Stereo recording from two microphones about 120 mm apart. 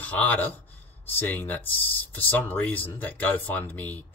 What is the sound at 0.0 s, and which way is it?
Speech, 15° left (ahead or behind).